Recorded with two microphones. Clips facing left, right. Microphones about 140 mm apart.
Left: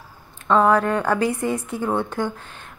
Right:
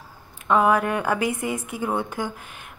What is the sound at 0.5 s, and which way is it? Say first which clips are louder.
A woman's voice: left 2 dB; 15° right (ahead or behind).